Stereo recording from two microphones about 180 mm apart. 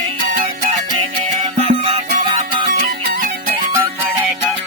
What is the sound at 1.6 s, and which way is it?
Music, 35° right (ahead or behind).